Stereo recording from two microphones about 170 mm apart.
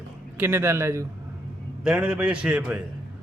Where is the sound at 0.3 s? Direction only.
15° right (ahead or behind).